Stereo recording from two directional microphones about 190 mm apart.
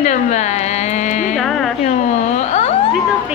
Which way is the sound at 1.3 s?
Centre (ahead or behind).